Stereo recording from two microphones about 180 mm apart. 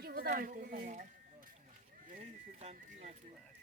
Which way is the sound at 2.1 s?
40° right (ahead or behind).